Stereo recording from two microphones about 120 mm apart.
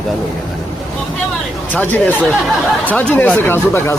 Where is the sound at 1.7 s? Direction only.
15° left (ahead or behind).